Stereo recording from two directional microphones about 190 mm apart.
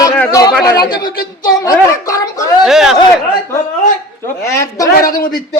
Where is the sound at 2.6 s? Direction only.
Centre (ahead or behind).